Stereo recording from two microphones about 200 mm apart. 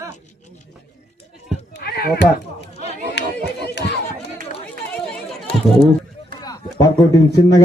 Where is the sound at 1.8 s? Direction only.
55° left (ahead or behind).